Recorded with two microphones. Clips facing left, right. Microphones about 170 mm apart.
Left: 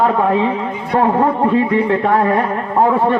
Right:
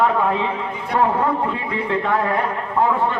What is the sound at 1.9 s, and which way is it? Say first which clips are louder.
Speech: left 6 dB; 50° left (ahead or behind).